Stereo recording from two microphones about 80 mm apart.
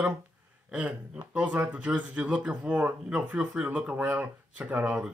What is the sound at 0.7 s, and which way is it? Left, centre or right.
Speech, centre.